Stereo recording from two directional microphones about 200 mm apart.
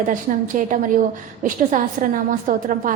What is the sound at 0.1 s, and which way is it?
A woman's voice, 40° right (ahead or behind).